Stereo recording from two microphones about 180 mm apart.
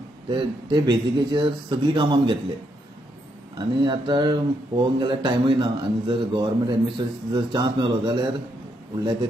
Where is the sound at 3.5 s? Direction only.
25° right (ahead or behind).